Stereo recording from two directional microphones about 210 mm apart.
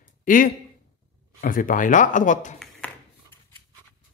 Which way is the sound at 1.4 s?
40° left (ahead or behind).